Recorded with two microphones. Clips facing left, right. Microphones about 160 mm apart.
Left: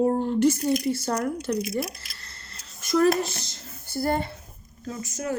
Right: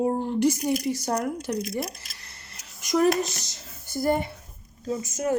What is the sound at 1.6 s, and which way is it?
Speech, 5° left (ahead or behind).